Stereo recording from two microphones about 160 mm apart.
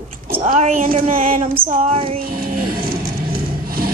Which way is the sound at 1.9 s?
35° right (ahead or behind).